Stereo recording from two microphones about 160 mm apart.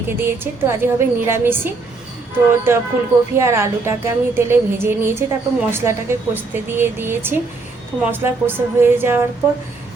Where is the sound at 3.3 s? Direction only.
15° right (ahead or behind).